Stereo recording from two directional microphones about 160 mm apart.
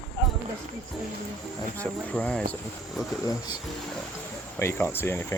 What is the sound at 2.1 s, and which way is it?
Speech, 10° left (ahead or behind).